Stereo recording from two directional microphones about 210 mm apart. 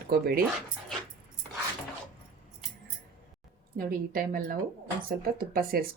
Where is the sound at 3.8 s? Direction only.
45° right (ahead or behind).